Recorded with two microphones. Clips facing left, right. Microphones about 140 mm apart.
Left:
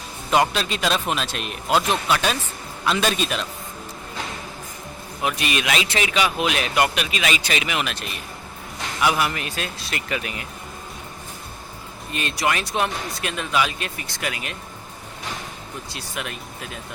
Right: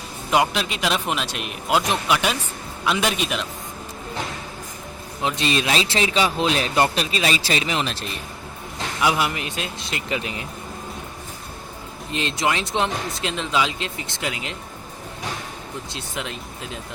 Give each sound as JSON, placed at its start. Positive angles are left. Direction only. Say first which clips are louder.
{"t": 0.3, "sound": "speech", "louder": "even", "side_deg": -15}
{"t": 5.4, "sound": "speech", "louder": "right 4 dB", "side_deg": -30}
{"t": 9.0, "sound": "speech", "louder": "even", "side_deg": -20}
{"t": 12.1, "sound": "speech", "louder": "right 1 dB", "side_deg": -20}
{"t": 15.9, "sound": "speech", "louder": "even", "side_deg": -25}